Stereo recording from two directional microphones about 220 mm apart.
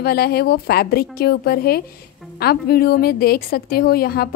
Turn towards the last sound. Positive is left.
turn(degrees=45)  # may be behind; listen again after turning